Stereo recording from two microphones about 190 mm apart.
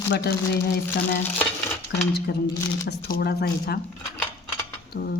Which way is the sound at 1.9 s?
60° left (ahead or behind).